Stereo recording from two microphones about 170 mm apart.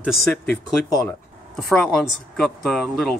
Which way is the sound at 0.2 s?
15° left (ahead or behind).